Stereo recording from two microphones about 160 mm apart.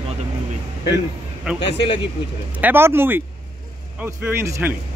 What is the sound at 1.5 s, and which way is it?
Speech, 5° right (ahead or behind).